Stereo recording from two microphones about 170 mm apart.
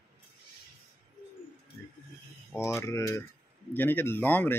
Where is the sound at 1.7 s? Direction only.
20° left (ahead or behind).